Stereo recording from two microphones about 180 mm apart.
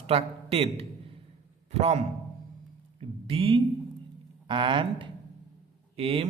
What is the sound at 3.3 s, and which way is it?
A man's voice, 30° right (ahead or behind).